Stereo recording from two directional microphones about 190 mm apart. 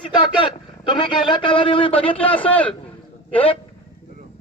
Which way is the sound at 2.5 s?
5° left (ahead or behind).